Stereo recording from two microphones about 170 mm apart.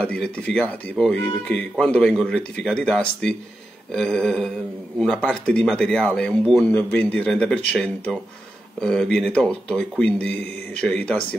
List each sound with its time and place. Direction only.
0.0 s speech: 5° left (ahead or behind)